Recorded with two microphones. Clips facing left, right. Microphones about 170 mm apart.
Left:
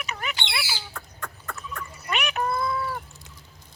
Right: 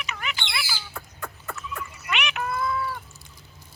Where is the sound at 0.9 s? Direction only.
10° right (ahead or behind).